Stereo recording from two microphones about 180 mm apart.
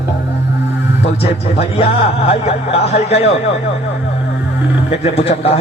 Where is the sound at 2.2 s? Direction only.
35° left (ahead or behind).